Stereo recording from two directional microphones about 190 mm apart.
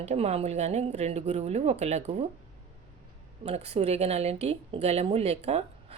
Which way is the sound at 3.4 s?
35° right (ahead or behind).